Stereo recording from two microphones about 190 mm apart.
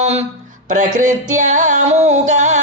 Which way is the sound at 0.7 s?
40° right (ahead or behind).